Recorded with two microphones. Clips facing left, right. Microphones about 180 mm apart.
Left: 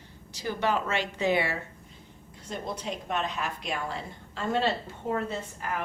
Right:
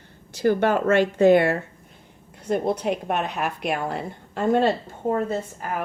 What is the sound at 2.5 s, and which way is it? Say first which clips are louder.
A woman's voice: right 12 dB; 60° right (ahead or behind).